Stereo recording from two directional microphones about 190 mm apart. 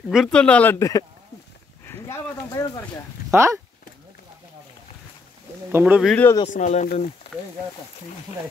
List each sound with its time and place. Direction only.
0.1 s speech: centre (ahead or behind)
3.3 s speech: 15° right (ahead or behind)
5.7 s speech: 10° right (ahead or behind)
6.0 s speech: 5° left (ahead or behind)
6.5 s speech: 40° left (ahead or behind)